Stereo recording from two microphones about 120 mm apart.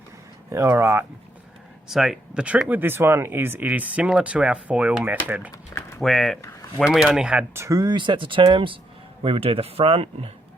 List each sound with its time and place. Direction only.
0.5 s speech: 20° right (ahead or behind)
1.9 s speech: 5° right (ahead or behind)
6.0 s speech: centre (ahead or behind)
7.5 s speech: 25° right (ahead or behind)
7.8 s speech: 40° right (ahead or behind)